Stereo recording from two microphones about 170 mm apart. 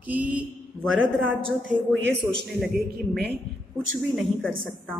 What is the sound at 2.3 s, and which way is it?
Speech, 5° left (ahead or behind).